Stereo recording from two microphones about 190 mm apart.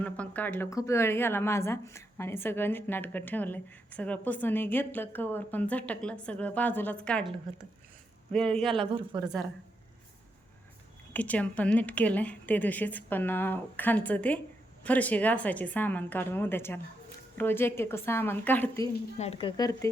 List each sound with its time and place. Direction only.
0.0 s a woman's voice: 10° left (ahead or behind)
8.3 s speech: 5° left (ahead or behind)
8.7 s speech: 30° right (ahead or behind)
11.1 s a woman's voice: 10° left (ahead or behind)
19.1 s speech: 35° left (ahead or behind); by 19.9 s 20° left (ahead or behind)